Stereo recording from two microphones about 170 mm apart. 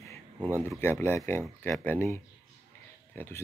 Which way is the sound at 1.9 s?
15° left (ahead or behind).